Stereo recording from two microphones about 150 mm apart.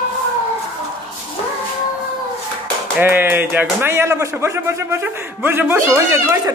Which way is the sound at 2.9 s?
15° right (ahead or behind).